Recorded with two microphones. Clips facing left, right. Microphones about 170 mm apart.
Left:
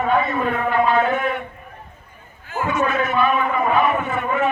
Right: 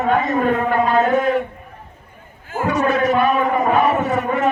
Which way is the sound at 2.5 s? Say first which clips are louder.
Right 3 dB; 45° right (ahead or behind).